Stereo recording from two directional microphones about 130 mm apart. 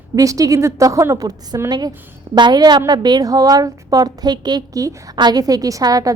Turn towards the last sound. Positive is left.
turn(degrees=-25)  # may be behind; listen again after turning